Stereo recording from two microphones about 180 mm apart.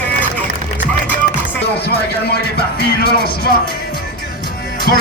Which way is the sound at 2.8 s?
60° left (ahead or behind).